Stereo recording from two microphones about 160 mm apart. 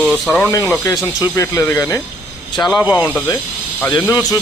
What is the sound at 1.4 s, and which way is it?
Speech, 15° left (ahead or behind).